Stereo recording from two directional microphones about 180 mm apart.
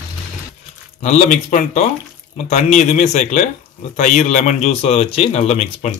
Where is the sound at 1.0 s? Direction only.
45° left (ahead or behind).